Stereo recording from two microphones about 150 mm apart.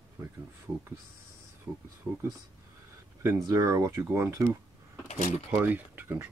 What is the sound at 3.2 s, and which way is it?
Speech, 20° right (ahead or behind).